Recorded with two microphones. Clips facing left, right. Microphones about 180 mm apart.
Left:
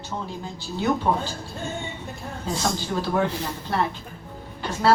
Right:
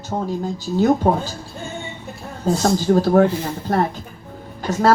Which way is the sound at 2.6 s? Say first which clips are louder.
Right 10 dB; 45° right (ahead or behind).